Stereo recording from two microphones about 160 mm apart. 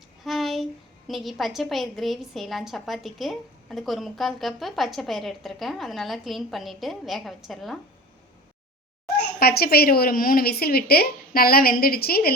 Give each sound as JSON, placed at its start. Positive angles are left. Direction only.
{"t": 0.3, "sound": "a woman's voice", "side_deg": 0}
{"t": 9.4, "sound": "a woman's voice", "side_deg": 75}